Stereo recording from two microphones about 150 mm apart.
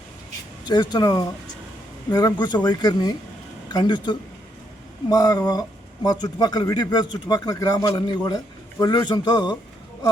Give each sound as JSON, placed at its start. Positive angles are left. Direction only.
{"t": 0.6, "sound": "speech", "side_deg": 30}